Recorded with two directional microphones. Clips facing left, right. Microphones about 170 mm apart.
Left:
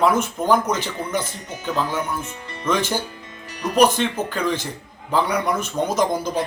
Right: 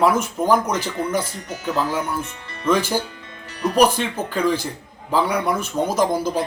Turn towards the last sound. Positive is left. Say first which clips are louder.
# right 1 dB
turn(degrees=-10)  # may be behind; listen again after turning